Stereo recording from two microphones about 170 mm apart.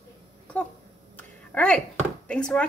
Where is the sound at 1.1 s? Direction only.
10° left (ahead or behind).